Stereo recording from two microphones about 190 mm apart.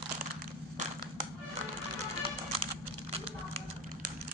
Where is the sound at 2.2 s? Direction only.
30° right (ahead or behind).